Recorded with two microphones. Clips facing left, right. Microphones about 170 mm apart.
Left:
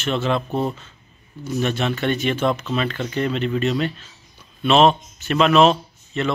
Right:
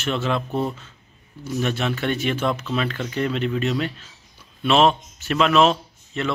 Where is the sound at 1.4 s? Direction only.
5° right (ahead or behind).